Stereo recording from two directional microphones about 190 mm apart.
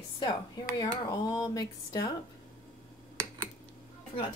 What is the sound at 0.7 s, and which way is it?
Speech, 20° left (ahead or behind).